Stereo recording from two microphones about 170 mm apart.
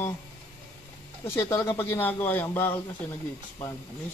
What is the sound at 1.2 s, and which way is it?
Speech, 15° left (ahead or behind).